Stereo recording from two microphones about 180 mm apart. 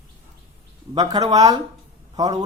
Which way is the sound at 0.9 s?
20° right (ahead or behind).